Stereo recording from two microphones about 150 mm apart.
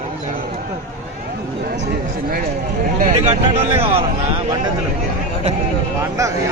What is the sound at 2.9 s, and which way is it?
Speech, 55° right (ahead or behind).